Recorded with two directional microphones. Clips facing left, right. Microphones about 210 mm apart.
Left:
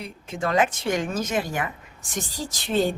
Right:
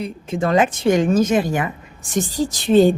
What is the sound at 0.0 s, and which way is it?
A woman's voice, 25° right (ahead or behind).